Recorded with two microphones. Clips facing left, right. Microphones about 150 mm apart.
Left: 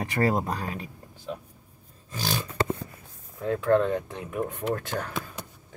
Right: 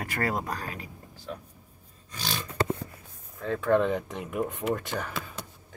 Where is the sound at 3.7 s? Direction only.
5° right (ahead or behind).